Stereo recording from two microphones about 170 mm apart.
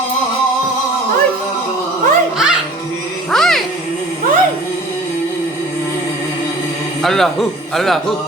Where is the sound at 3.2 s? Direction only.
Centre (ahead or behind).